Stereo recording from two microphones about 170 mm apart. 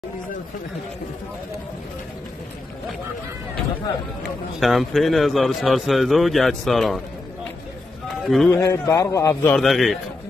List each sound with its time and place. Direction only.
4.6 s a man's voice: centre (ahead or behind)
8.3 s a man's voice: centre (ahead or behind)
8.5 s a man's voice: 20° left (ahead or behind)
9.6 s a man's voice: centre (ahead or behind)